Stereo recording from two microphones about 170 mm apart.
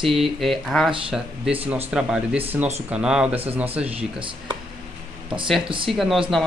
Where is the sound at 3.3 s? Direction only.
35° right (ahead or behind).